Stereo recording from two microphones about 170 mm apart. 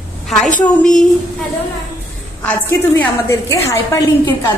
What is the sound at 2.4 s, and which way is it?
A woman's voice, 10° left (ahead or behind).